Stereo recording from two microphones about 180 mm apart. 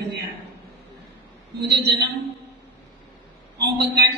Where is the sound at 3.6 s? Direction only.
65° right (ahead or behind).